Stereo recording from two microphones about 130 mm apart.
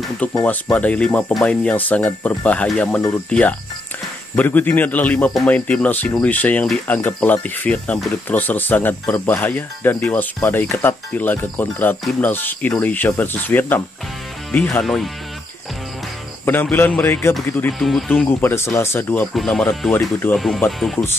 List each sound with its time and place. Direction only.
0.2 s speech: 10° left (ahead or behind)
16.4 s speech: 15° left (ahead or behind)
17.7 s speech: 5° left (ahead or behind)
18.4 s speech: 20° left (ahead or behind)
19.3 s speech: 5° left (ahead or behind)
19.9 s speech: 15° left (ahead or behind)
20.3 s speech: centre (ahead or behind)